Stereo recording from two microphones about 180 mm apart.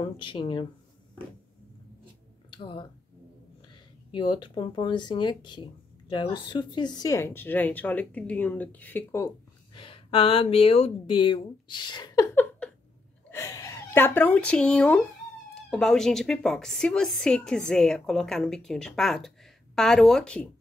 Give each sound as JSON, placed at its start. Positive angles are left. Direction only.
{"t": 0.0, "sound": "speech", "side_deg": 25}
{"t": 2.5, "sound": "speech", "side_deg": 25}
{"t": 4.1, "sound": "speech", "side_deg": 25}
{"t": 9.8, "sound": "speech", "side_deg": 30}
{"t": 12.4, "sound": "a sound", "side_deg": 5}
{"t": 13.3, "sound": "speech", "side_deg": 15}